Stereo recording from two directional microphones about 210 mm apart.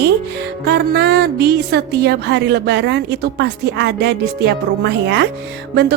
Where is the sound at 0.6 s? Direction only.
50° right (ahead or behind).